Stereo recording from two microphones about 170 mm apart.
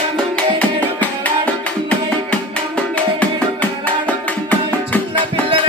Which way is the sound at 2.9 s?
10° left (ahead or behind).